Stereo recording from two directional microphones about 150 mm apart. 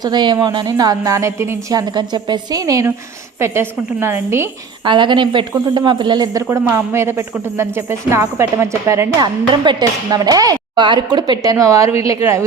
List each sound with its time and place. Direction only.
0.0 s a woman's voice: 30° right (ahead or behind)
4.9 s a woman's voice: 30° right (ahead or behind)